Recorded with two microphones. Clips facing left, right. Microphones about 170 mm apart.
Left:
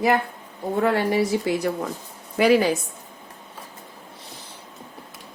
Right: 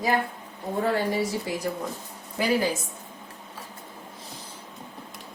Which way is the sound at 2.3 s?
80° left.